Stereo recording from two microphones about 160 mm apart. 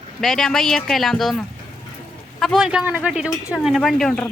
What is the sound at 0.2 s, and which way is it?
Speech, 5° left (ahead or behind).